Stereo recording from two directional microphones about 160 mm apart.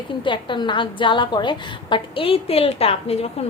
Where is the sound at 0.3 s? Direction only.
30° left (ahead or behind).